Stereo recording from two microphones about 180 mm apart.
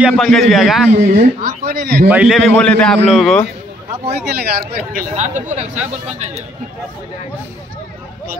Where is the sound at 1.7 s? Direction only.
55° right (ahead or behind).